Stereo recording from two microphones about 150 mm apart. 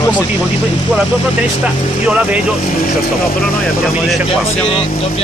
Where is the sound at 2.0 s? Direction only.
10° right (ahead or behind).